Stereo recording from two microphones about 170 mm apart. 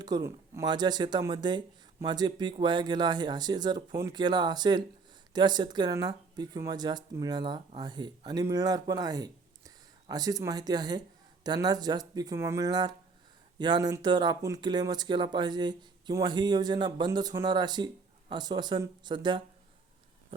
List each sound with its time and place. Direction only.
0.0 s speech: 20° right (ahead or behind)